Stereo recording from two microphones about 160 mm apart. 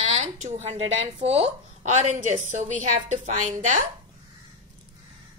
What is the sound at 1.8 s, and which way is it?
A woman's voice, 50° right (ahead or behind).